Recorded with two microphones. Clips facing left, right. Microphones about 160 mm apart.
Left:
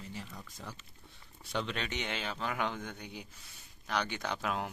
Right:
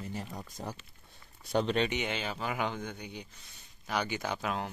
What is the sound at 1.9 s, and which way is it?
Speech, 5° right (ahead or behind).